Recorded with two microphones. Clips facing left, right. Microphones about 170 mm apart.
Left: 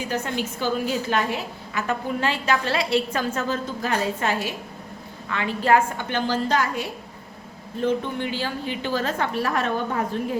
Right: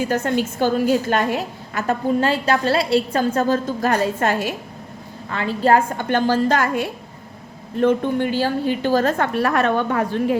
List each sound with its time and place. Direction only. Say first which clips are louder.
0.1 s a woman's voice: right 6 dB; 50° right (ahead or behind)
2.2 s a woman's voice: right 5 dB; 35° right (ahead or behind); by 4.5 s 50° right (ahead or behind)
5.3 s a woman's voice: right 3 dB; 35° right (ahead or behind)
6.0 s a woman's voice: right 6 dB; 50° right (ahead or behind); by 10.3 s 75° right (ahead or behind)